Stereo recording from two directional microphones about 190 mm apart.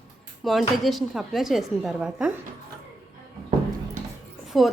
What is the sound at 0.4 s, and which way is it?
A woman's voice, centre (ahead or behind).